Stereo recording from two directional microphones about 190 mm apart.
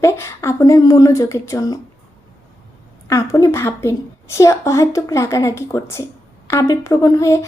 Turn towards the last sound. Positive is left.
turn(degrees=15)  # may be behind; listen again after turning